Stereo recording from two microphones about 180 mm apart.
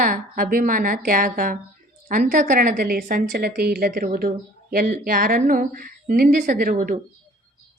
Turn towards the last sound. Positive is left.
turn(degrees=-45)  # may be behind; listen again after turning